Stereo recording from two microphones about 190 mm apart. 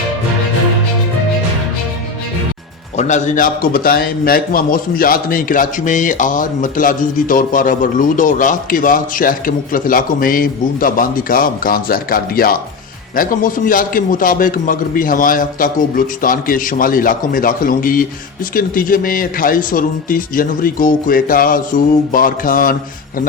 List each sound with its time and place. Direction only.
3.0 s a man's voice: 40° left (ahead or behind)